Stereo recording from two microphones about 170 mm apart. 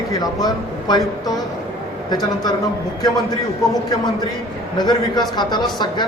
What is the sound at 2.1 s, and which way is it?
Speech, 25° left (ahead or behind).